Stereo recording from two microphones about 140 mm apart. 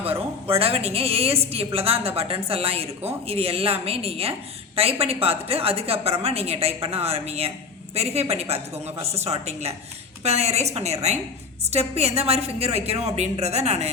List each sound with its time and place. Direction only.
0.0 s a woman's voice: 45° right (ahead or behind)